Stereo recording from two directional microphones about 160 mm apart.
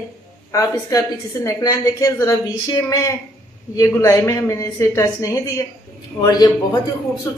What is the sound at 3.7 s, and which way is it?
A woman's voice, 20° left (ahead or behind).